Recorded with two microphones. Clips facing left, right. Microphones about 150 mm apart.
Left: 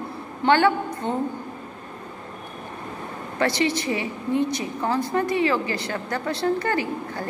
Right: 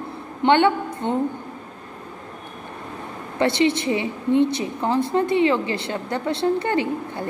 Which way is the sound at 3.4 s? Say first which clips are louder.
Right 4 dB; 25° right (ahead or behind).